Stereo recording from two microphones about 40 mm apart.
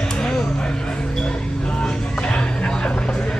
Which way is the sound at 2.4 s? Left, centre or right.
Left.